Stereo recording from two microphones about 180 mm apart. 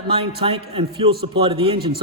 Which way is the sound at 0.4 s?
30° right (ahead or behind).